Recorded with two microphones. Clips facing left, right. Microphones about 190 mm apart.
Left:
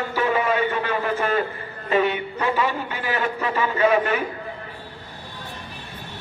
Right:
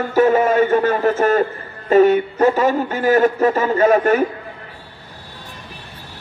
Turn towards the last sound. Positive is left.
turn(degrees=-45)  # may be behind; listen again after turning